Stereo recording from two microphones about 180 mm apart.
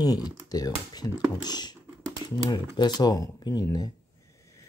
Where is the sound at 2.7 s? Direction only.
20° left (ahead or behind).